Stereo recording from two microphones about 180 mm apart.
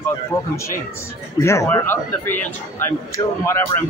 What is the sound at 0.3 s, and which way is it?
Speech, 15° left (ahead or behind).